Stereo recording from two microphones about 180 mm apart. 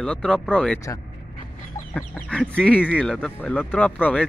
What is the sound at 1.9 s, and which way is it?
Speech, 5° left (ahead or behind).